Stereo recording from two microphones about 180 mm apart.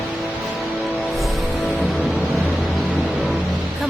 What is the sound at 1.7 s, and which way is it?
Music, centre (ahead or behind).